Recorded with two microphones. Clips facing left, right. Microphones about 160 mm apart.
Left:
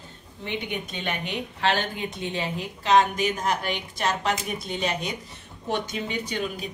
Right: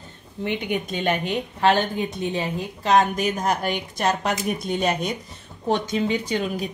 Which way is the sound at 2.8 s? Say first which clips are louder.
Right 1 dB; 45° right (ahead or behind).